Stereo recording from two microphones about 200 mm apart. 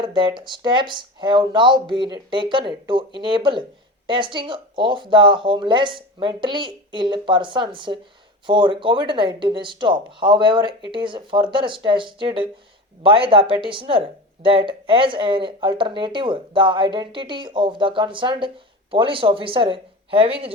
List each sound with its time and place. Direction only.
0.0 s speech: 25° right (ahead or behind)